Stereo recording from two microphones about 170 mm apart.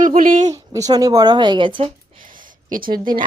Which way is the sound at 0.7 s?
20° right (ahead or behind).